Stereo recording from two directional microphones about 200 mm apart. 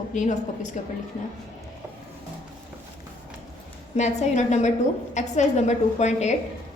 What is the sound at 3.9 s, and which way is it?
A woman's voice, 35° left (ahead or behind).